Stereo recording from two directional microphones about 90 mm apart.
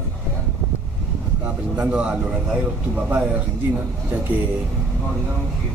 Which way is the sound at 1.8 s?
10° right (ahead or behind).